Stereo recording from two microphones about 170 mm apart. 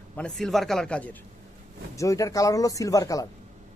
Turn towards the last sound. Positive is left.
turn(degrees=20)  # may be behind; listen again after turning